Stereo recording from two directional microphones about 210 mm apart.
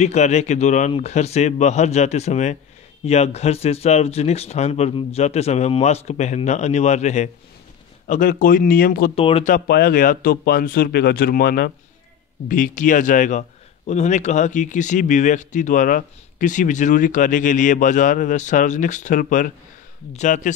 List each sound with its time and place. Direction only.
0.0 s a man's voice: 30° left (ahead or behind)
9.1 s speech: 25° left (ahead or behind)
9.5 s a man's voice: 45° left (ahead or behind)